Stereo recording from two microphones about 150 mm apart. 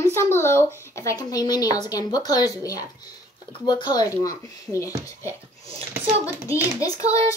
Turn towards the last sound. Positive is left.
turn(degrees=20)  # may be behind; listen again after turning